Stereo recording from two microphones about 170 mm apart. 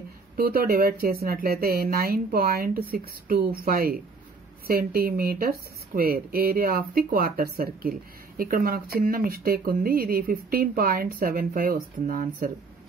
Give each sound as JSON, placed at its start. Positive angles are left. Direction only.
{"t": 0.4, "sound": "speech", "side_deg": -60}